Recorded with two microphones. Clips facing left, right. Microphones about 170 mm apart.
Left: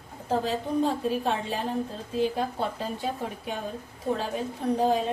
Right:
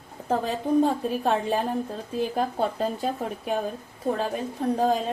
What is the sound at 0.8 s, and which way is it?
Speech, 50° right (ahead or behind).